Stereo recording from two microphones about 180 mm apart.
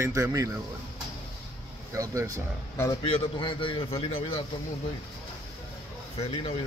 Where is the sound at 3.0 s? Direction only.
30° left (ahead or behind).